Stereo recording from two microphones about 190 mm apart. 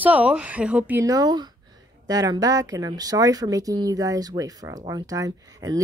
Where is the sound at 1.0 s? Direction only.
20° right (ahead or behind).